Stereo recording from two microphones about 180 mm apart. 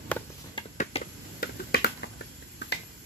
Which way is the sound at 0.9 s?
35° left (ahead or behind).